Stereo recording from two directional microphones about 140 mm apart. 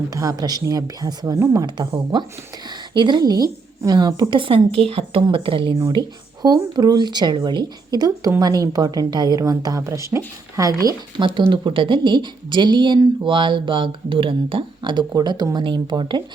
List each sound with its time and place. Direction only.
0.1 s speech: 25° right (ahead or behind)
11.3 s speech: 35° right (ahead or behind)